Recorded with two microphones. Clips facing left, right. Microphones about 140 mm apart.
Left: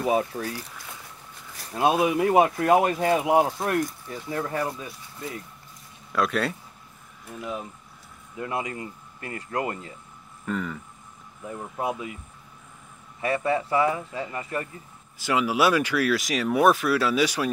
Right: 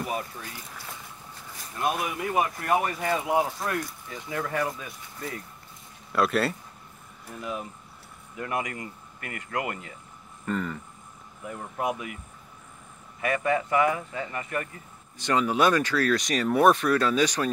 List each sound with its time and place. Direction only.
0.0 s speech: 90° left
1.7 s speech: 90° left; by 3.4 s 65° left (ahead or behind)
3.6 s speech: 50° left (ahead or behind)
4.3 s speech: 30° left (ahead or behind)
6.1 s speech: centre (ahead or behind)
8.4 s speech: 25° left (ahead or behind)
10.4 s speech: centre (ahead or behind)
11.8 s speech: 25° left (ahead or behind)
13.2 s speech: 30° left (ahead or behind)
15.1 s speech: 5° left (ahead or behind)